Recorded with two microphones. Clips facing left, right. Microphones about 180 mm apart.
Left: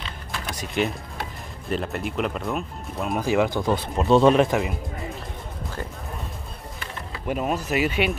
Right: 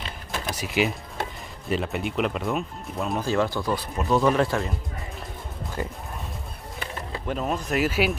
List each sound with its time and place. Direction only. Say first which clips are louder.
0.6 s speech: even; 5° right (ahead or behind)
3.2 s speech: left 3 dB; 15° left (ahead or behind)
7.2 s speech: left 2 dB; 10° left (ahead or behind)